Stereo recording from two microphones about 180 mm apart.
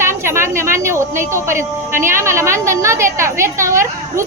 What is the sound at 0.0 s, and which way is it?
A woman's voice, 15° right (ahead or behind).